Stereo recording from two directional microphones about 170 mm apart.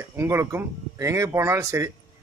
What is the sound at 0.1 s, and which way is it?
A man's voice, 15° right (ahead or behind).